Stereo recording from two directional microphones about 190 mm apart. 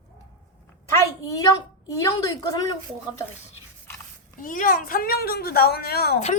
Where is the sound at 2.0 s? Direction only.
20° left (ahead or behind).